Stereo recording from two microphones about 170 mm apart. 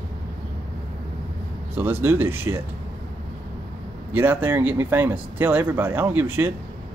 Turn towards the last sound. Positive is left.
turn(degrees=-15)  # may be behind; listen again after turning